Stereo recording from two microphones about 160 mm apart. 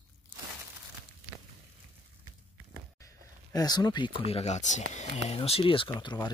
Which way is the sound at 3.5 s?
25° left (ahead or behind).